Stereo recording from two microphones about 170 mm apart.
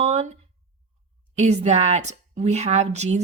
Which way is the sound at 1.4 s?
40° right (ahead or behind).